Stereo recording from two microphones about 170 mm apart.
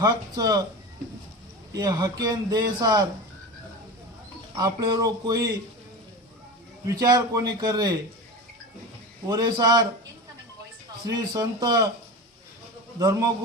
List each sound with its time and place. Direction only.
0.0 s a man's voice: 20° right (ahead or behind)
1.7 s a man's voice: 20° right (ahead or behind)
4.5 s a man's voice: 25° right (ahead or behind)
6.8 s a man's voice: 20° right (ahead or behind)
9.2 s a man's voice: 25° right (ahead or behind)
11.0 s a man's voice: 25° right (ahead or behind)
13.0 s a man's voice: 20° right (ahead or behind)